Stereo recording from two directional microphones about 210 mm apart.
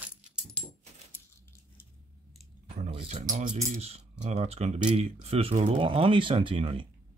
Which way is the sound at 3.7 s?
30° right (ahead or behind).